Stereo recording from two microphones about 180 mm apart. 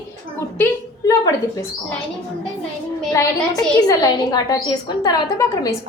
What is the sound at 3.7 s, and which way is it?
A woman's voice, 20° left (ahead or behind).